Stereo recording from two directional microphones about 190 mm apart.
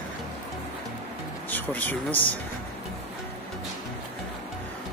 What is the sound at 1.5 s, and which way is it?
Speech, 10° left (ahead or behind).